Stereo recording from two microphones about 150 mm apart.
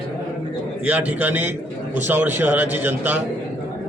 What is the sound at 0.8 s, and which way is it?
A man's voice, 10° right (ahead or behind).